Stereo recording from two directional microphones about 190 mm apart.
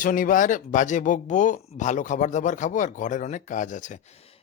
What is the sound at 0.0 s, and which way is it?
Speech, 45° left (ahead or behind).